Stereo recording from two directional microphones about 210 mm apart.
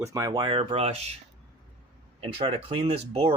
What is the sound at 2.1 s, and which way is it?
Speech, 25° right (ahead or behind).